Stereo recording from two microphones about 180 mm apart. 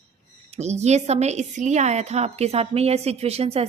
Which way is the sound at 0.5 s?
40° right (ahead or behind).